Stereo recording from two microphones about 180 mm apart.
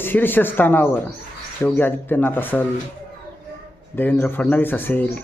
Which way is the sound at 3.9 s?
10° left (ahead or behind).